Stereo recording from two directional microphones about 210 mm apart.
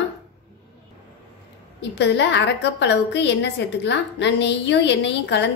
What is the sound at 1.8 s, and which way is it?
A woman's voice, 55° left (ahead or behind).